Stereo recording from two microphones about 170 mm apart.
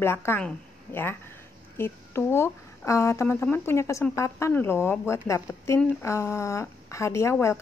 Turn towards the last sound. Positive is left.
turn(degrees=15)  # may be behind; listen again after turning